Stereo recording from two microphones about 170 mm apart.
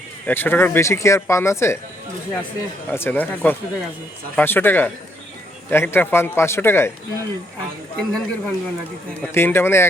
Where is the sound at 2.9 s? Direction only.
10° left (ahead or behind).